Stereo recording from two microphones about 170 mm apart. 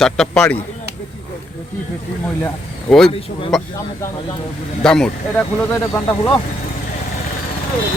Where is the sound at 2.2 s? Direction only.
5° left (ahead or behind).